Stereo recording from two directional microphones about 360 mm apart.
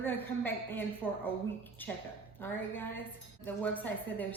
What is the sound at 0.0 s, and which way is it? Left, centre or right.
A woman's voice, centre.